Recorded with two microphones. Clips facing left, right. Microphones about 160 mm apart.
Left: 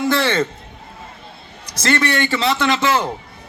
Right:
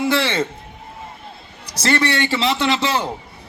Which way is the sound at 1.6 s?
30° right (ahead or behind).